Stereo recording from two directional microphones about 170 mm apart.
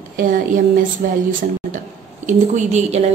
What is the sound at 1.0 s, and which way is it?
Speech, 60° right (ahead or behind).